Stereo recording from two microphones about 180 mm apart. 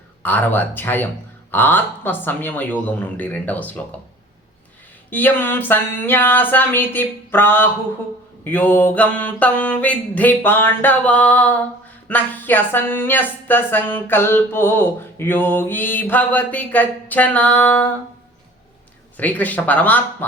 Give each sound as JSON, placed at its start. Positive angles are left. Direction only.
{"t": 0.2, "sound": "speech", "side_deg": 10}
{"t": 5.1, "sound": "speech", "side_deg": 10}
{"t": 19.1, "sound": "speech", "side_deg": 10}